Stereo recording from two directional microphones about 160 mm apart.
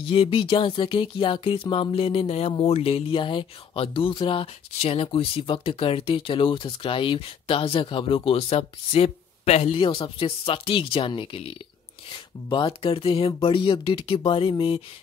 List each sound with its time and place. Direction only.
0.0 s speech: 35° left (ahead or behind)